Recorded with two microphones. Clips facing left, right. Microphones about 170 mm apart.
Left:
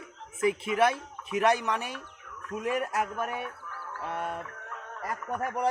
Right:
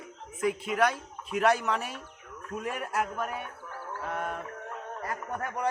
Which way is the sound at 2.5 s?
20° left (ahead or behind).